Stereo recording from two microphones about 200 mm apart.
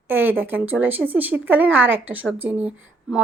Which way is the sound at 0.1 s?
10° right (ahead or behind).